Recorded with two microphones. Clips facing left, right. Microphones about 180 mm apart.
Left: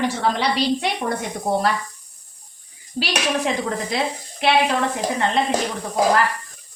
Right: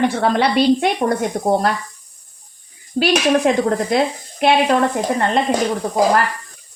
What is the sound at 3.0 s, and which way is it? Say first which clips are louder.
Speech: right 8 dB; 50° right (ahead or behind).